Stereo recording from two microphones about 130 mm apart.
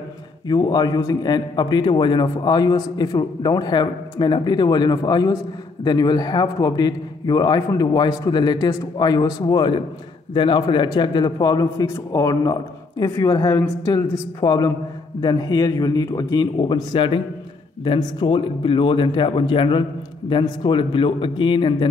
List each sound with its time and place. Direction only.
0.5 s a man's voice: 30° left (ahead or behind)